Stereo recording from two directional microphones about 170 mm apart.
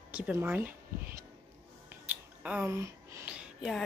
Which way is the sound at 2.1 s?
10° right (ahead or behind).